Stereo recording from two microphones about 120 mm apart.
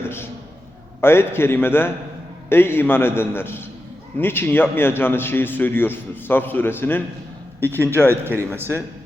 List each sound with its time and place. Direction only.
0.0 s a sound: 20° left (ahead or behind)
1.0 s a man's voice: 20° left (ahead or behind)
8.1 s speech: 20° right (ahead or behind)